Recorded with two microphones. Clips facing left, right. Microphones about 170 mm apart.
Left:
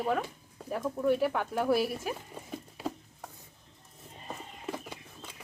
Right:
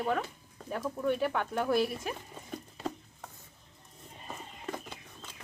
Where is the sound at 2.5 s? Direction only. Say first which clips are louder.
Even; 5° left (ahead or behind).